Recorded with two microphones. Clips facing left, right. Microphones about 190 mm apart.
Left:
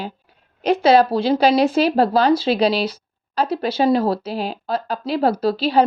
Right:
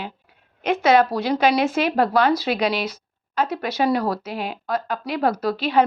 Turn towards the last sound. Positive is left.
turn(degrees=30)  # may be behind; listen again after turning